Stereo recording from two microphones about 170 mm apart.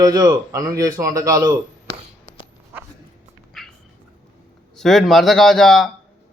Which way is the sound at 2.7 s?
10° right (ahead or behind).